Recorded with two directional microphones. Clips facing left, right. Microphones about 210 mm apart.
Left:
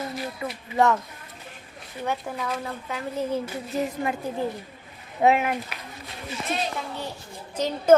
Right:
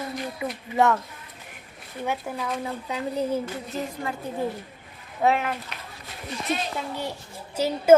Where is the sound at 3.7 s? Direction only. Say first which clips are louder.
Left 5 dB; 15° left (ahead or behind).